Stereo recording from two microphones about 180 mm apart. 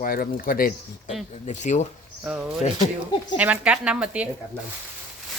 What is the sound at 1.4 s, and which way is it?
Speech, 40° left (ahead or behind).